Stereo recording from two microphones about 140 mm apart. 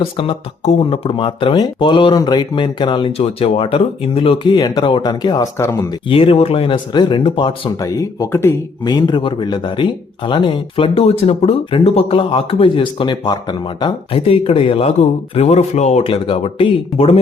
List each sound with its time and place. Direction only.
0.0 s speech: 40° left (ahead or behind); by 5.9 s 20° left (ahead or behind)
6.1 s speech: 45° left (ahead or behind)
7.8 s speech: 25° left (ahead or behind)
8.8 s speech: 30° left (ahead or behind)